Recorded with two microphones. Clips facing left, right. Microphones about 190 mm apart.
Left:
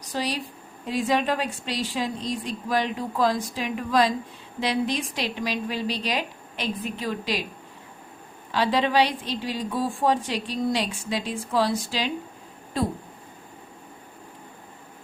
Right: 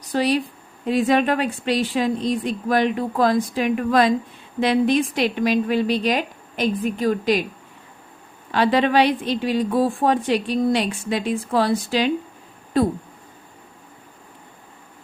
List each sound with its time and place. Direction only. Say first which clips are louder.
0.1 s a woman's voice: right 9 dB; 60° right (ahead or behind)
8.5 s a woman's voice: right 4 dB; 60° right (ahead or behind)